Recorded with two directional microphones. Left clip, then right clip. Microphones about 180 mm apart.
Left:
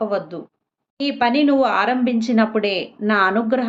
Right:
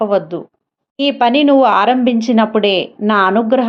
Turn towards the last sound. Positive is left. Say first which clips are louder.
# right 6 dB
turn(degrees=-35)  # may be behind; listen again after turning